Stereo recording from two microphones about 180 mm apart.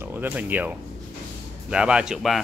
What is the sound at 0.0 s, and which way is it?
Speech, 10° right (ahead or behind).